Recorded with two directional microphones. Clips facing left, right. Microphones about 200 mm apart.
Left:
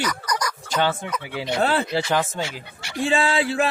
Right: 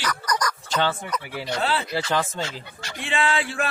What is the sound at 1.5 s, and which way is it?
Speech, 50° left (ahead or behind).